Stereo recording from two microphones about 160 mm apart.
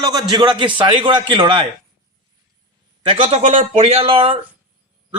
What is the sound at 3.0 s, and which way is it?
Speech, 35° right (ahead or behind).